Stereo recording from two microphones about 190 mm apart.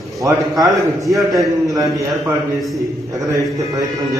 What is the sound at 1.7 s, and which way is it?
Speech, 20° right (ahead or behind).